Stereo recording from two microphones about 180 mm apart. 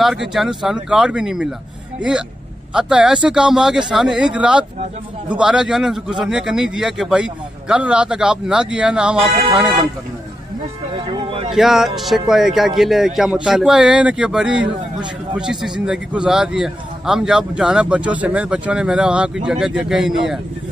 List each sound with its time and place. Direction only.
0.0 s a man's voice: centre (ahead or behind)
2.7 s a man's voice: 5° right (ahead or behind)
11.1 s a sound: 25° right (ahead or behind)
11.5 s a man's voice: centre (ahead or behind)